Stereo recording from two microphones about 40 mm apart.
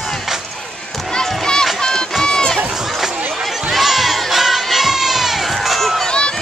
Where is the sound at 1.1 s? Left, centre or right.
Centre.